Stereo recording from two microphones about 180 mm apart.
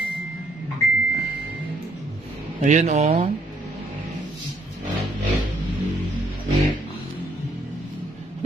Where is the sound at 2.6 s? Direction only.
40° right (ahead or behind).